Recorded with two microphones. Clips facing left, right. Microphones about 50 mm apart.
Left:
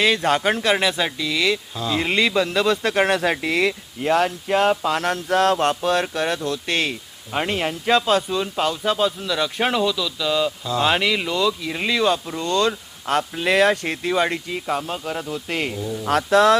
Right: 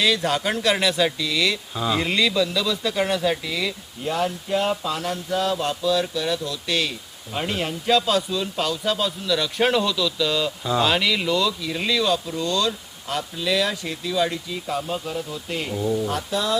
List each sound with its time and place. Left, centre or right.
0.0 s speech: left
1.7 s speech: centre
2.0 s speech: left
16.0 s speech: left